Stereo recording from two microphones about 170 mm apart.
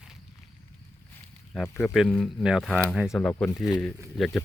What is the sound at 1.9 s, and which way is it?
Speech, centre (ahead or behind).